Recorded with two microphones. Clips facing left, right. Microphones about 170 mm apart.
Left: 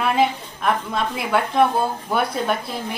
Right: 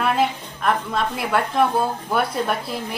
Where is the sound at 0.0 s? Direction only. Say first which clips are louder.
Left 1 dB; centre (ahead or behind).